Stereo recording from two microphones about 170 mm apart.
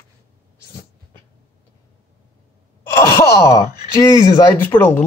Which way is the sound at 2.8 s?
15° left (ahead or behind).